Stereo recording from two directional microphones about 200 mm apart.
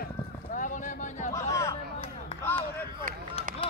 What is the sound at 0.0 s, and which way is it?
Clip-clop, 45° left (ahead or behind).